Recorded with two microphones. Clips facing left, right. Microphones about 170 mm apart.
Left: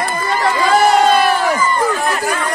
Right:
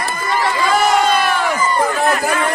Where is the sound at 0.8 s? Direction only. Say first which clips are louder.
Left 4 dB; 45° left (ahead or behind).